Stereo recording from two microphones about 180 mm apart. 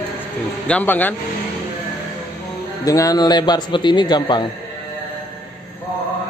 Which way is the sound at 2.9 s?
20° left (ahead or behind).